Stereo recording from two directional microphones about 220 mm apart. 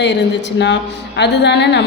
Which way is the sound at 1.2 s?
50° left (ahead or behind).